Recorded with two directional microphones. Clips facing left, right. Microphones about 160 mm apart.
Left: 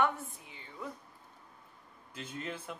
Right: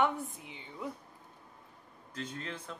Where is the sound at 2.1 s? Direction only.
10° left (ahead or behind).